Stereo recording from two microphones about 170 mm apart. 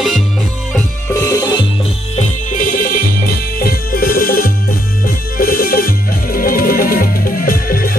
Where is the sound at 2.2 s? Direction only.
50° left (ahead or behind).